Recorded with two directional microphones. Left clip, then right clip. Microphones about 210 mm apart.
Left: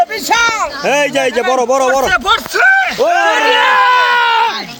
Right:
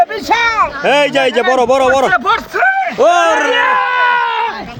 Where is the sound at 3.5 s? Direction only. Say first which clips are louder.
Left 3 dB; 50° left (ahead or behind).